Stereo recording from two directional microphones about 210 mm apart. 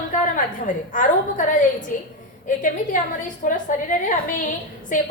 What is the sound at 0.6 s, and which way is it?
A woman's voice, 40° left (ahead or behind).